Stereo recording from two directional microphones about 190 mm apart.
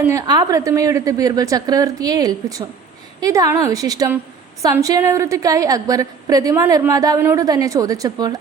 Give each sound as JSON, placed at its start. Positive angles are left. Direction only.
{"t": 0.1, "sound": "a woman's voice", "side_deg": -20}